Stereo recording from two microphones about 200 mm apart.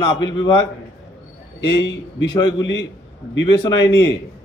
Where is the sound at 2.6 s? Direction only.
65° left (ahead or behind).